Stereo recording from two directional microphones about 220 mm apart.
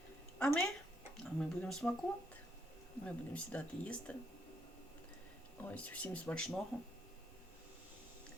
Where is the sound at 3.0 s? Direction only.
5° left (ahead or behind).